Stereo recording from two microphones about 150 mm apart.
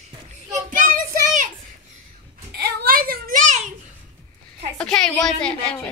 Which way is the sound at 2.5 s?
80° right.